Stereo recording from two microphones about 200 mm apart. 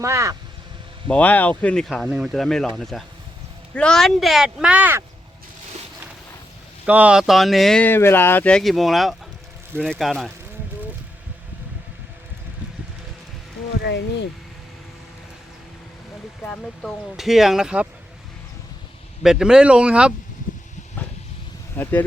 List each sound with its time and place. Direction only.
0.0 s speech: 15° right (ahead or behind)
1.0 s speech: 5° left (ahead or behind); by 5.0 s 10° right (ahead or behind)
6.8 s speech: 5° right (ahead or behind)
13.8 s speech: 60° left (ahead or behind)
16.4 s speech: 5° left (ahead or behind)
19.2 s speech: 5° right (ahead or behind)
21.8 s speech: 10° left (ahead or behind)